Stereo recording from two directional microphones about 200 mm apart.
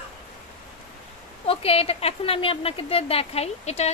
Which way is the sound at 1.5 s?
30° left (ahead or behind).